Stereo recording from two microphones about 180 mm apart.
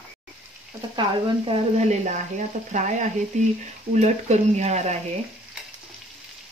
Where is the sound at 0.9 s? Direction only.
30° right (ahead or behind).